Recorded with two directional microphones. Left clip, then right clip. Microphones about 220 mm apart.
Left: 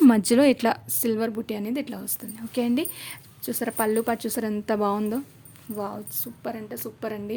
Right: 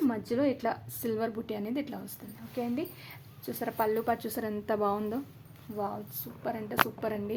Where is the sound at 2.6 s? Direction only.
40° left (ahead or behind); by 6.6 s 20° left (ahead or behind).